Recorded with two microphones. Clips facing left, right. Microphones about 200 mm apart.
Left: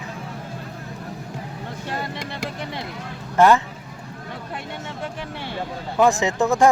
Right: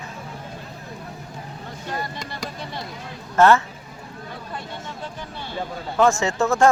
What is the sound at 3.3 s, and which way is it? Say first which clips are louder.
Speech: even; 15° left (ahead or behind).